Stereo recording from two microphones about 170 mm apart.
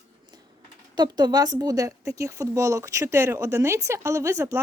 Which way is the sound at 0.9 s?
25° right (ahead or behind).